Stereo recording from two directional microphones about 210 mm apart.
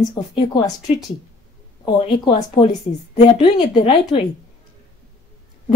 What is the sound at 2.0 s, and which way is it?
A woman's voice, 25° left (ahead or behind).